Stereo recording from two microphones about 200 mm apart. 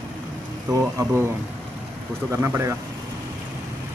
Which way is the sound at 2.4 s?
10° right (ahead or behind).